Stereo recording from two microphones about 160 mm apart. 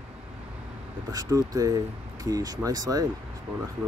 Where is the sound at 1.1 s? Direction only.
20° right (ahead or behind).